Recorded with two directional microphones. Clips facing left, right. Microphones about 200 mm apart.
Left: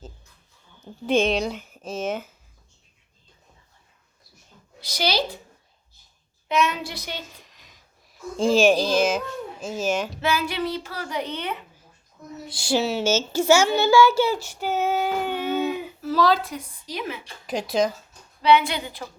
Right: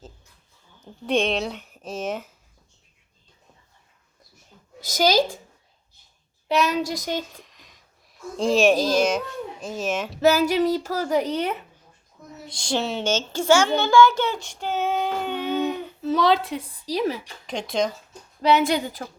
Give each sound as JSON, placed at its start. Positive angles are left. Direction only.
{"t": 0.9, "sound": "speech", "side_deg": 0}
{"t": 4.8, "sound": "a woman's voice", "side_deg": -45}
{"t": 6.5, "sound": "a child's voice", "side_deg": -35}
{"t": 7.4, "sound": "speech", "side_deg": 0}
{"t": 10.2, "sound": "a child's voice", "side_deg": -40}
{"t": 12.5, "sound": "speech", "side_deg": 5}
{"t": 16.0, "sound": "a child's voice", "side_deg": -20}
{"t": 17.4, "sound": "speech", "side_deg": 5}
{"t": 18.4, "sound": "a woman's voice", "side_deg": -45}